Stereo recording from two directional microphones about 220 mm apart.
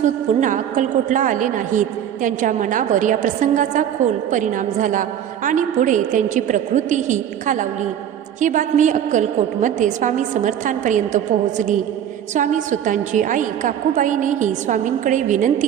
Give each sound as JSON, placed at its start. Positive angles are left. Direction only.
{"t": 0.0, "sound": "a woman's voice", "side_deg": -35}
{"t": 12.3, "sound": "a woman's voice", "side_deg": -35}